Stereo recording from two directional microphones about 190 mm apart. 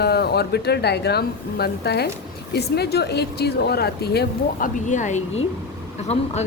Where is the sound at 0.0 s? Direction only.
55° left (ahead or behind).